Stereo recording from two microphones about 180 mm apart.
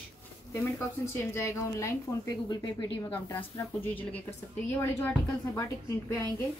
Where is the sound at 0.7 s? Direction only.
15° left (ahead or behind).